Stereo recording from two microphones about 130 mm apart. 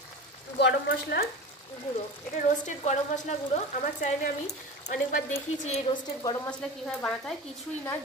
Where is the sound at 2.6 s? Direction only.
70° left (ahead or behind).